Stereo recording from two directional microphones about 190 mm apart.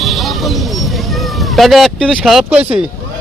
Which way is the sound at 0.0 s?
Centre (ahead or behind).